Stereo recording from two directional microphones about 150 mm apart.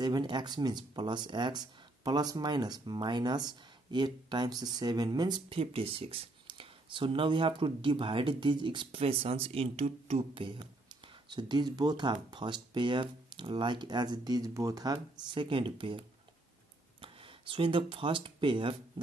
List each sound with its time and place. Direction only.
0.0 s speech: 30° right (ahead or behind)